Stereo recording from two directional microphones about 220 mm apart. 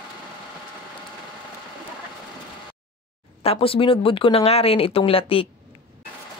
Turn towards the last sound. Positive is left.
turn(degrees=25)  # may be behind; listen again after turning